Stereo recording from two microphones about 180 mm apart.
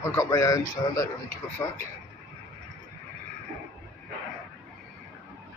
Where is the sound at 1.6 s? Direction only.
15° left (ahead or behind).